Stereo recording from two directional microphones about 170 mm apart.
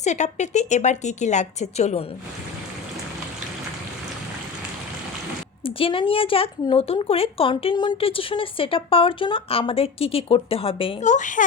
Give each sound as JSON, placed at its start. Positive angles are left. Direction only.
{"t": 0.0, "sound": "a woman's voice", "side_deg": 45}
{"t": 5.6, "sound": "speech", "side_deg": 35}
{"t": 11.0, "sound": "a woman's voice", "side_deg": 45}